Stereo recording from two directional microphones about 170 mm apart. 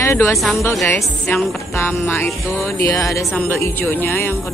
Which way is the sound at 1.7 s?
15° left (ahead or behind).